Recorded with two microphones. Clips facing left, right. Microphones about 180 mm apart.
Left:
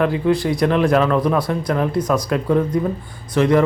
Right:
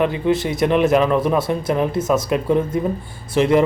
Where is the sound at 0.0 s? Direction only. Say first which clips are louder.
Left 1 dB; 25° right (ahead or behind).